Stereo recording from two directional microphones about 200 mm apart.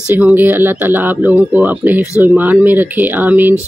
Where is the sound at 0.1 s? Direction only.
10° right (ahead or behind).